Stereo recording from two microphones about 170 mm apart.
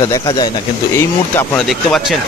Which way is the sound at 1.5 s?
Centre (ahead or behind).